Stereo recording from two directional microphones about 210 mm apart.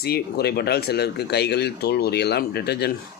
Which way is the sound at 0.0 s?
50° left (ahead or behind).